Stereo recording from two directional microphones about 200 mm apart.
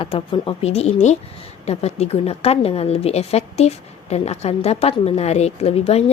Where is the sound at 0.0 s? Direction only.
25° left (ahead or behind).